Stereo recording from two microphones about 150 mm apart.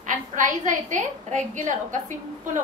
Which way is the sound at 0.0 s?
60° right (ahead or behind).